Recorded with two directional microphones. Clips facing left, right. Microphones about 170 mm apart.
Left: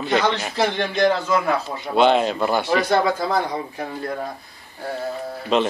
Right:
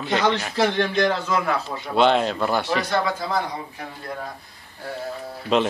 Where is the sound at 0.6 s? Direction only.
5° left (ahead or behind).